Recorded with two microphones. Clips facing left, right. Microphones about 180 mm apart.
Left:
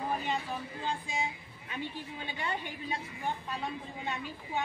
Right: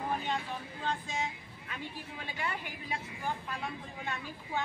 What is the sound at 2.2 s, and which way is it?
Speech, 25° left (ahead or behind).